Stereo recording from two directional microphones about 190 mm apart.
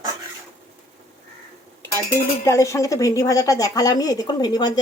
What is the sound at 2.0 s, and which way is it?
Speech, 15° left (ahead or behind).